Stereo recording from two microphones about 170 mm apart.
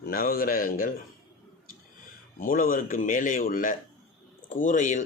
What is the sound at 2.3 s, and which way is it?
Speech, 55° left (ahead or behind).